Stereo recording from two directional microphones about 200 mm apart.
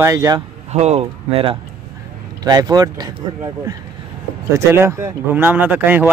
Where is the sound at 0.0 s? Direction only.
15° right (ahead or behind).